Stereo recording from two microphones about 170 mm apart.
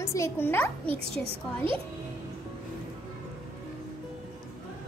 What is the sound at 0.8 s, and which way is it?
Speech, 30° right (ahead or behind).